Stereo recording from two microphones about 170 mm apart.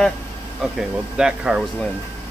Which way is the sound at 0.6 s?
5° right (ahead or behind).